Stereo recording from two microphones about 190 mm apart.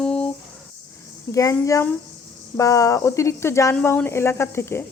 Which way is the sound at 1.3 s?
15° left (ahead or behind).